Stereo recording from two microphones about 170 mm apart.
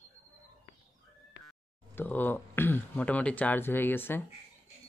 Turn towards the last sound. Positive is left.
turn(degrees=10)  # may be behind; listen again after turning